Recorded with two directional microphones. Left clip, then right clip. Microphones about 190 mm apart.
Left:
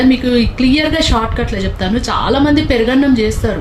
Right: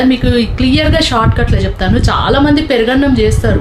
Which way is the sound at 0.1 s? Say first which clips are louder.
Right 1 dB; 20° right (ahead or behind).